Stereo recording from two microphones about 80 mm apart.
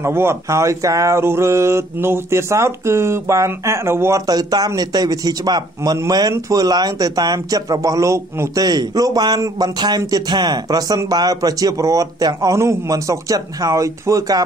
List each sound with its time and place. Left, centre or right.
0.0 s speech: right
4.3 s speech: right
8.6 s speech: right
12.5 s speech: right